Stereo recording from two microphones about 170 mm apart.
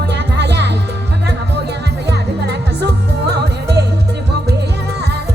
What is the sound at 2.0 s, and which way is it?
Music, 75° right (ahead or behind).